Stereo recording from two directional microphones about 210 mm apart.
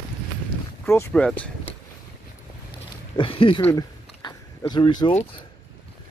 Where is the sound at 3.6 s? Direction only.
15° left (ahead or behind).